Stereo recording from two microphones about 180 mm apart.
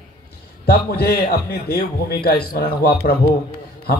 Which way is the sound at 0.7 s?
60° left (ahead or behind).